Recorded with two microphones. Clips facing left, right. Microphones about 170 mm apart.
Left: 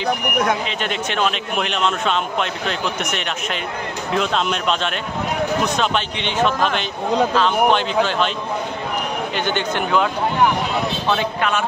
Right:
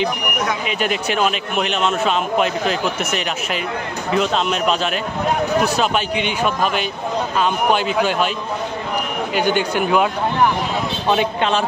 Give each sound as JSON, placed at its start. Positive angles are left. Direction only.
{"t": 0.7, "sound": "a man's voice", "side_deg": -10}
{"t": 9.3, "sound": "speech", "side_deg": -10}
{"t": 11.1, "sound": "speech", "side_deg": -20}